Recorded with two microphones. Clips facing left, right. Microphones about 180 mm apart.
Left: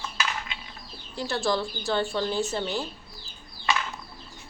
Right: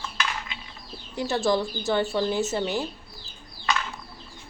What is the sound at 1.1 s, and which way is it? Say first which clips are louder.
Speech: right 3 dB; 20° right (ahead or behind).